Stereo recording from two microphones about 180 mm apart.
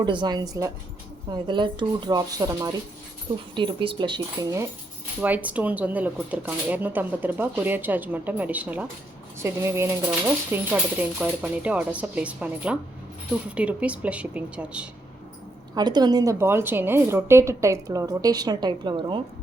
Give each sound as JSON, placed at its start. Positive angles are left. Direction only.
{"t": 0.0, "sound": "a woman's voice", "side_deg": -25}
{"t": 5.2, "sound": "speech", "side_deg": -10}
{"t": 15.7, "sound": "a woman's voice", "side_deg": -25}